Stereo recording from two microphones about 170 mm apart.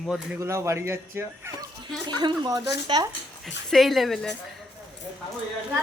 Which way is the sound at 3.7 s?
Centre (ahead or behind).